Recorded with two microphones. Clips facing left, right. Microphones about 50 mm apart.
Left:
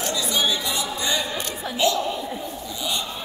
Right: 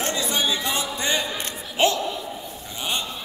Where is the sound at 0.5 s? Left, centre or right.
Right.